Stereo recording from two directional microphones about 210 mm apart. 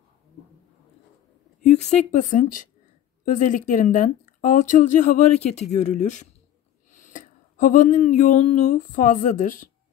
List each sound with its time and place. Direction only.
1.6 s a woman's voice: 35° left (ahead or behind)